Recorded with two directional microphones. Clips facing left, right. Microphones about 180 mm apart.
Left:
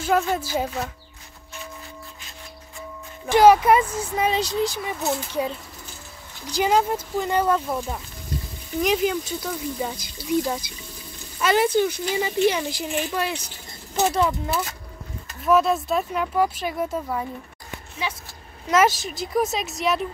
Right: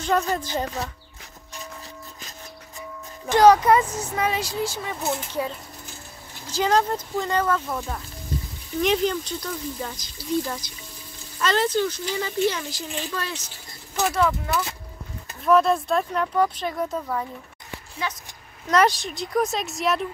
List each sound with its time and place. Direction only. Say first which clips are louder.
0.0 s a woman's voice: left 1 dB; 5° left (ahead or behind)
3.3 s a child's voice: left 1 dB; 10° left (ahead or behind)
4.2 s a child's voice: left 3 dB; 20° left (ahead or behind)
15.4 s a child's voice: right 1 dB; 5° left (ahead or behind)
18.7 s a woman's voice: left 1 dB; 5° left (ahead or behind)